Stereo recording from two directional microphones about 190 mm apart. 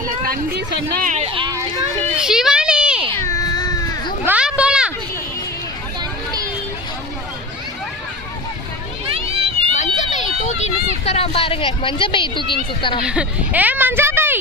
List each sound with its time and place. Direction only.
0.3 s speech: 55° right (ahead or behind)
1.0 s speech: 40° right (ahead or behind)
1.4 s speech: 20° right (ahead or behind)
2.1 s a sound: 5° right (ahead or behind)
3.2 s baby cry: 20° left (ahead or behind)
4.3 s a sound: 5° right (ahead or behind)
9.1 s a sound: 30° right (ahead or behind)
9.7 s vehicle: 40° left (ahead or behind)
13.1 s speech: 5° right (ahead or behind)